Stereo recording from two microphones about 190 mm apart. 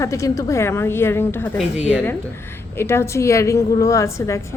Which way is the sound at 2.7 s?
15° left (ahead or behind).